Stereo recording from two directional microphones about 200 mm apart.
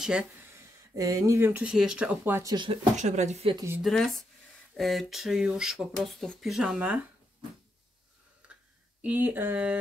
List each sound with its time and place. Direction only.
0.0 s speech: 5° right (ahead or behind)
0.9 s speech: 15° right (ahead or behind)
3.0 s speech: 35° right (ahead or behind)
3.5 s speech: 10° right (ahead or behind)
3.8 s speech: centre (ahead or behind)
9.0 s speech: 10° right (ahead or behind)